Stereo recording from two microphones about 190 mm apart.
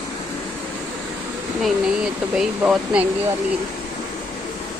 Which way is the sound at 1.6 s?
5° right (ahead or behind).